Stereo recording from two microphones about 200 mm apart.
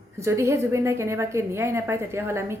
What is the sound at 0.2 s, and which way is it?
A woman's voice, 15° right (ahead or behind).